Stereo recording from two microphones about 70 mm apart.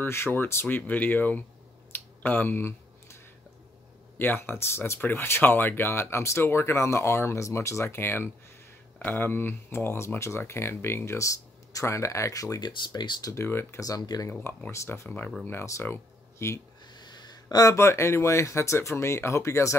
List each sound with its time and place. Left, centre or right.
0.0 s speech: left
1.9 s a sound: left
4.2 s speech: left
12.6 s speech: left
13.3 s speech: left
13.7 s speech: left
14.7 s speech: left
15.0 s speech: left
15.4 s speech: left
16.9 s a sound: left
17.7 s speech: left